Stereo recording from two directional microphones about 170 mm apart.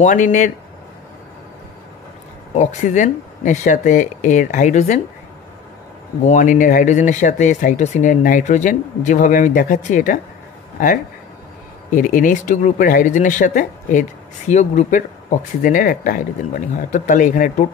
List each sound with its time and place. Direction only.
0.0 s speech: 45° left (ahead or behind)
2.5 s speech: 45° left (ahead or behind)
6.2 s speech: 50° left (ahead or behind)
11.9 s speech: 50° left (ahead or behind)